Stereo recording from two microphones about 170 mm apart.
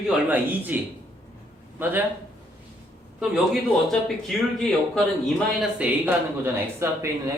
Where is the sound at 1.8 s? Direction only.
10° right (ahead or behind).